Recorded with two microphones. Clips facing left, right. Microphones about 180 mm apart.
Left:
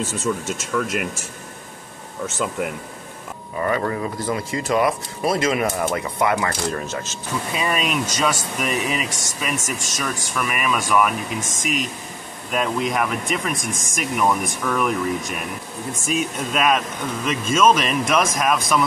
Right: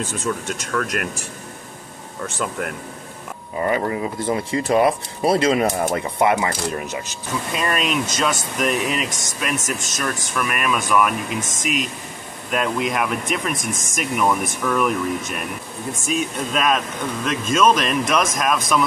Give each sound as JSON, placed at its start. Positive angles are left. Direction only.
{"t": 0.3, "sound": "speech", "side_deg": 5}
{"t": 3.6, "sound": "speech", "side_deg": -20}
{"t": 7.5, "sound": "speech", "side_deg": 0}